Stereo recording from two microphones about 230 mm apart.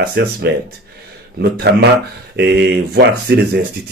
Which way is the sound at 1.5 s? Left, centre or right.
Right.